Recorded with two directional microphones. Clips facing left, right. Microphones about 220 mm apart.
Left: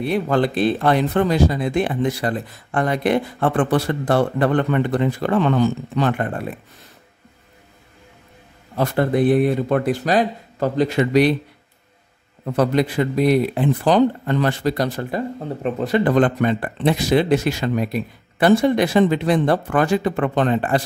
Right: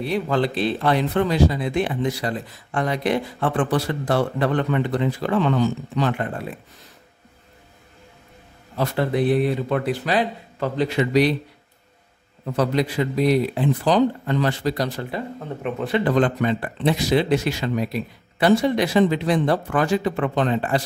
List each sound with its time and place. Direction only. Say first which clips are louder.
0.0 s speech: left 3 dB; 50° left (ahead or behind)
8.7 s speech: left 3 dB; 50° left (ahead or behind)
12.5 s speech: left 3 dB; 55° left (ahead or behind)
15.3 s speech: left 4 dB; 35° left (ahead or behind); by 20.8 s 55° left (ahead or behind)